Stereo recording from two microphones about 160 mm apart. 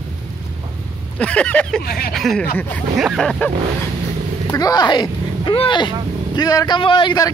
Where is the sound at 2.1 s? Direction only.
Centre (ahead or behind).